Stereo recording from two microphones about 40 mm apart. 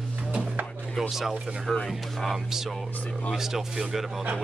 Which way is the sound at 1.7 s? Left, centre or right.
Centre.